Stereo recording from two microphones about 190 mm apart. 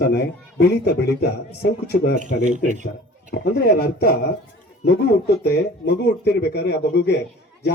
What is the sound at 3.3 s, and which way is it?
A man's voice, 55° left (ahead or behind).